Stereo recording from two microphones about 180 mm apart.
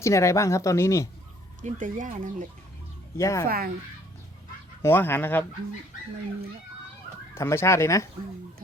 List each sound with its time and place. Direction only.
0.0 s speech: 15° left (ahead or behind)
1.6 s speech: 45° right (ahead or behind)
3.2 s speech: 15° left (ahead or behind)
3.4 s speech: 55° right (ahead or behind)
4.8 s speech: 10° left (ahead or behind)
7.3 s speech: 15° left (ahead or behind)